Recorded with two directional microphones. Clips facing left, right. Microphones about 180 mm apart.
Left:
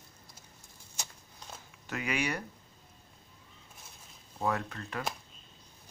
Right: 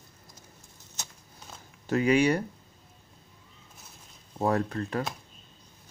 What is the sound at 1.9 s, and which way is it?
Speech, 35° right (ahead or behind).